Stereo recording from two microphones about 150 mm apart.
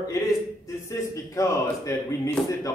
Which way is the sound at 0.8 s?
20° left (ahead or behind).